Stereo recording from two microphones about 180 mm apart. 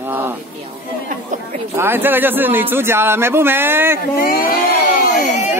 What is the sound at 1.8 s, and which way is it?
A man's voice, 10° right (ahead or behind).